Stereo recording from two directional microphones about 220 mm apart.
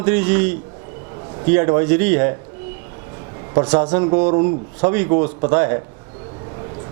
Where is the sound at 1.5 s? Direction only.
25° right (ahead or behind).